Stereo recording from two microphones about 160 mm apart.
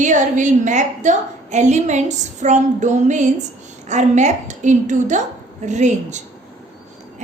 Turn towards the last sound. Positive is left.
turn(degrees=-45)  # may be behind; listen again after turning